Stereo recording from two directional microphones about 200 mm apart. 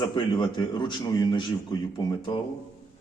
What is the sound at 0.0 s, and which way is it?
A man's voice, 20° left (ahead or behind).